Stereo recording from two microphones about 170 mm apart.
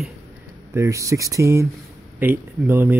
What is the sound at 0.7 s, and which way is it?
Speech, 15° right (ahead or behind).